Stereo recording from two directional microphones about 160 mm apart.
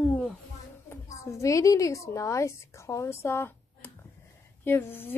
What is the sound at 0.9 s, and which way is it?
A woman's voice, 20° left (ahead or behind).